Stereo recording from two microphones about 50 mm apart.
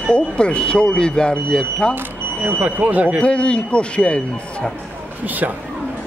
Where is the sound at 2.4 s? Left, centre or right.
Right.